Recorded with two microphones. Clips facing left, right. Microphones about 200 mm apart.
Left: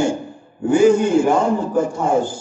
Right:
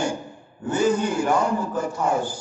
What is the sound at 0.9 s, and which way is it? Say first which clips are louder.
Speech: left 7 dB; 25° left (ahead or behind).